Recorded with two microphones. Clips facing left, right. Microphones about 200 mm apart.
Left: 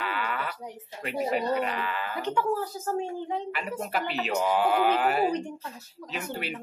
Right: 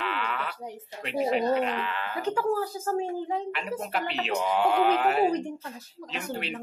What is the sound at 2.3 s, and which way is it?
Speech, 40° right (ahead or behind).